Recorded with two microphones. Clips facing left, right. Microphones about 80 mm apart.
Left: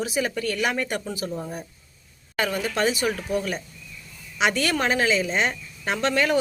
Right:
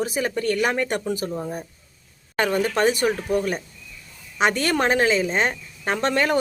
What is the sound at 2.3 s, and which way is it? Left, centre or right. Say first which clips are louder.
Speech: right 4 dB; right.